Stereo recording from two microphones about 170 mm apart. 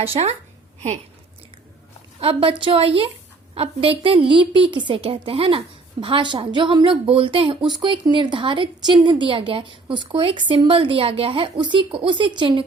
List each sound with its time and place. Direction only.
0.0 s a woman's voice: 35° right (ahead or behind)
2.2 s a woman's voice: 30° right (ahead or behind)